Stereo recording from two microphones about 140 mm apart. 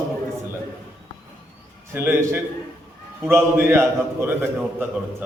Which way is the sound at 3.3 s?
20° right (ahead or behind).